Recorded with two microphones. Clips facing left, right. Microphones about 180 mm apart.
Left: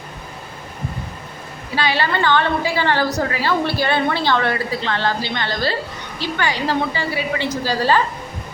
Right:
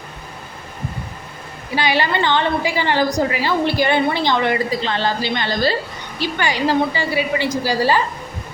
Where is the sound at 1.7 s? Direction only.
15° right (ahead or behind).